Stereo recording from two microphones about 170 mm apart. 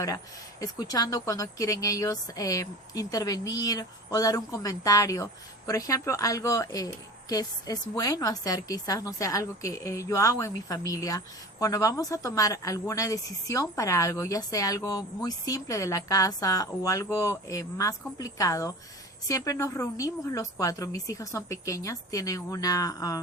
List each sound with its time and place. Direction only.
0.6 s a woman's voice: 20° left (ahead or behind)